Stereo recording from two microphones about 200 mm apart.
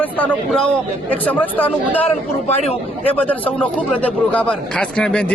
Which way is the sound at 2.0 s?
30° left (ahead or behind).